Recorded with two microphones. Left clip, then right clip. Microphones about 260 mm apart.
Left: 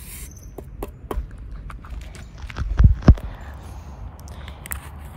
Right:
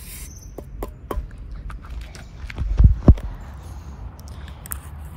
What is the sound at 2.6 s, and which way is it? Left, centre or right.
Heart sounds, right.